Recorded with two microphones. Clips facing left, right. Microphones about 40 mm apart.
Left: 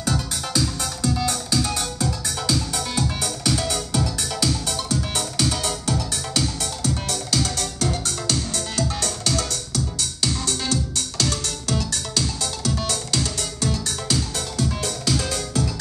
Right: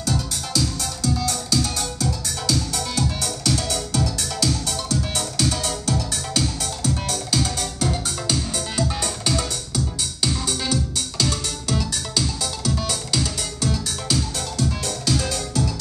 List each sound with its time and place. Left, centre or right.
0.0 s music: centre